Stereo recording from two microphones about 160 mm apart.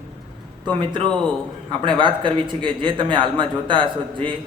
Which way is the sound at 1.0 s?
5° left (ahead or behind).